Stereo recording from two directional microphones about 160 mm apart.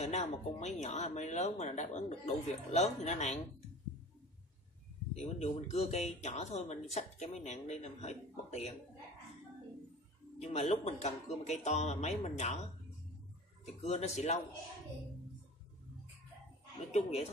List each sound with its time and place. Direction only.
0.0 s speech: 45° left (ahead or behind)
5.1 s speech: 45° left (ahead or behind)
10.4 s speech: 40° left (ahead or behind)
13.7 s speech: 45° left (ahead or behind)
16.9 s speech: 45° left (ahead or behind)